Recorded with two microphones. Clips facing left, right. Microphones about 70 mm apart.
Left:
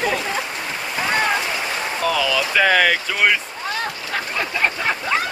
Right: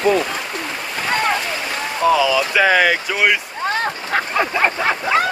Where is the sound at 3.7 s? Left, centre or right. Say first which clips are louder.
Right 5 dB; right.